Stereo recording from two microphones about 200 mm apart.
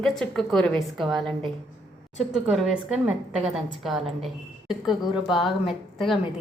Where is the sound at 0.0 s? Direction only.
Centre (ahead or behind).